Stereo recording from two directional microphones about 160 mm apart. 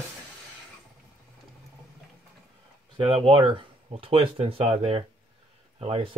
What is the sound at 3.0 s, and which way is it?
Speech, 35° right (ahead or behind).